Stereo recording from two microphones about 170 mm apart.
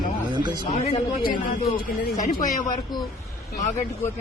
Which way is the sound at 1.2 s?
55° left (ahead or behind).